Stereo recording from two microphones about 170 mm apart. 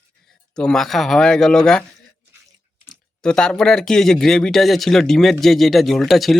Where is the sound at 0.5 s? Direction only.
5° left (ahead or behind).